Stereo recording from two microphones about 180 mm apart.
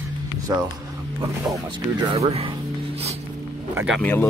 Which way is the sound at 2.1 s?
35° right (ahead or behind).